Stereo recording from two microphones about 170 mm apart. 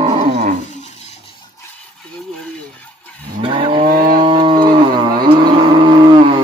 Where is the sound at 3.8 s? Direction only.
60° right (ahead or behind).